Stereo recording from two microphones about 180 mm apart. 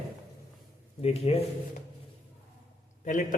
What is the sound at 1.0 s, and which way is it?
Speech, 35° left (ahead or behind).